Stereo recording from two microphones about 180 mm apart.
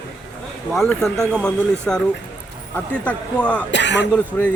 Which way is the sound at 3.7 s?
80° left.